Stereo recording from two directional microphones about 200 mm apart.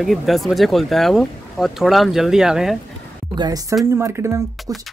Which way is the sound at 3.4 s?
20° right (ahead or behind).